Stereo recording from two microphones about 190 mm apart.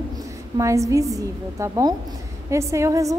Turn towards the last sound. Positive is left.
turn(degrees=-15)  # may be behind; listen again after turning